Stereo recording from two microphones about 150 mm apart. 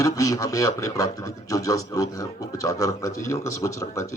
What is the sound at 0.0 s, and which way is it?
Speech, 20° left (ahead or behind).